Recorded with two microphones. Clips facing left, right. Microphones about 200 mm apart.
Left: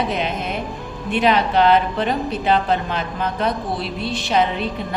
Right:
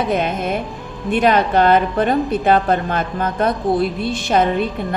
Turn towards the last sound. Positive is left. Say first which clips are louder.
# right 3 dB
turn(degrees=-50)  # may be behind; listen again after turning